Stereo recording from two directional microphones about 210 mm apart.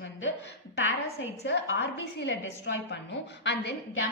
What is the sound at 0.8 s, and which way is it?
A woman's voice, 70° left (ahead or behind).